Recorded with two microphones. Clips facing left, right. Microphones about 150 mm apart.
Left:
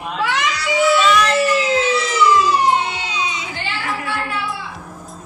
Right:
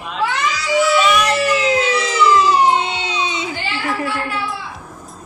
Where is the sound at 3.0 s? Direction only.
25° right (ahead or behind).